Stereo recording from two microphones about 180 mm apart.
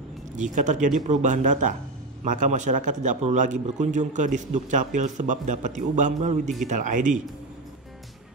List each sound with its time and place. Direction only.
0.4 s a man's voice: 45° right (ahead or behind)